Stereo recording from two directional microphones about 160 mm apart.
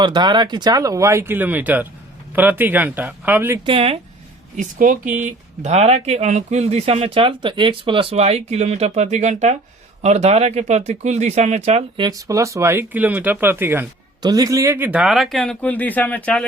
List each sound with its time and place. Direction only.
0.0 s speech: 30° right (ahead or behind); by 3.6 s 10° right (ahead or behind)
3.7 s speech: 35° right (ahead or behind)
4.5 s speech: 55° right (ahead or behind)
11.9 s speech: 25° right (ahead or behind)
14.2 s speech: 25° right (ahead or behind); by 16.5 s 5° left (ahead or behind)